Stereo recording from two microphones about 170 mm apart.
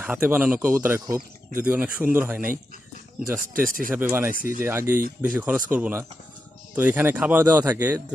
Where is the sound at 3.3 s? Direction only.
55° right (ahead or behind).